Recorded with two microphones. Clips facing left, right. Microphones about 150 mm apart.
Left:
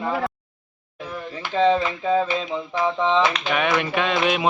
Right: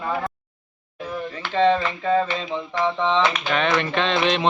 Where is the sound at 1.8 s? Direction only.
10° left (ahead or behind).